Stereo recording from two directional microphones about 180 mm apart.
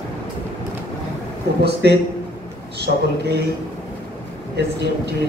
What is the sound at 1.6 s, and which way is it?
Speech, 65° right (ahead or behind).